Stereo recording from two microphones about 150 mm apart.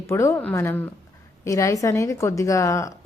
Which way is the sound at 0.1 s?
20° left (ahead or behind).